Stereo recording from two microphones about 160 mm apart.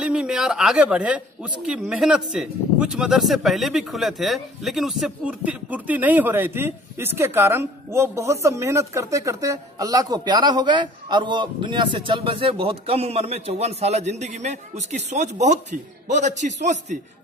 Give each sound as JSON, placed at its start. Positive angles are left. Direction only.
{"t": 0.0, "sound": "a man's voice", "side_deg": -5}